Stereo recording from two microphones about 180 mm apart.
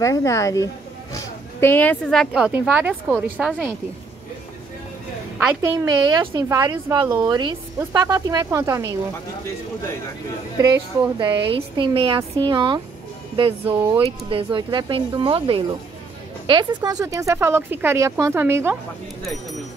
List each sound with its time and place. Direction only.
0.0 s speech: 15° left (ahead or behind); by 3.7 s 5° right (ahead or behind)
5.6 s speech: 15° right (ahead or behind)
10.6 s speech: 20° right (ahead or behind)
14.3 s speech: 25° right (ahead or behind)